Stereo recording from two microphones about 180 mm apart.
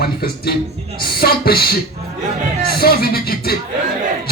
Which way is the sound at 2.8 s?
55° left (ahead or behind).